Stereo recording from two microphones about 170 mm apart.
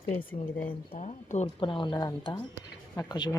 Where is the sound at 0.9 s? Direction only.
45° left (ahead or behind).